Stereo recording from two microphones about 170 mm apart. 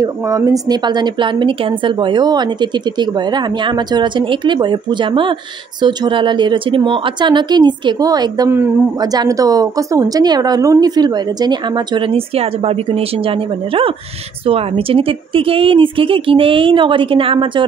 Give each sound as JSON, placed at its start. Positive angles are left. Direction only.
{"t": 0.0, "sound": "a woman's voice", "side_deg": -20}